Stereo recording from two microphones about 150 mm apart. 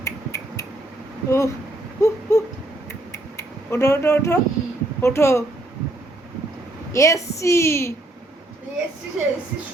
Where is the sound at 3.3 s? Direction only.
20° left (ahead or behind).